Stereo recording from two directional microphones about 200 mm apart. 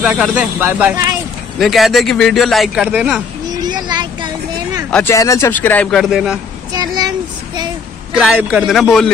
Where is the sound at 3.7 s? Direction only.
20° right (ahead or behind).